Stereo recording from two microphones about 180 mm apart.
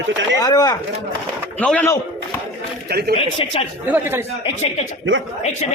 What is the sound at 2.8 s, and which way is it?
Speech, 60° right (ahead or behind).